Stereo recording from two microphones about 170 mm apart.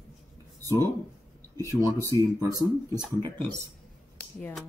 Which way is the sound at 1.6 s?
20° right (ahead or behind).